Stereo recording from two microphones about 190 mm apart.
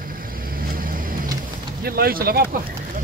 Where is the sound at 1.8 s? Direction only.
50° right (ahead or behind).